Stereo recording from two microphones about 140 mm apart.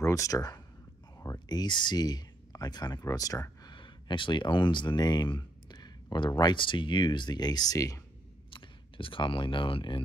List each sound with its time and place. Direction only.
0.0 s speech: 25° left (ahead or behind)
3.7 s speech: 35° left (ahead or behind)
8.5 s speech: 35° left (ahead or behind)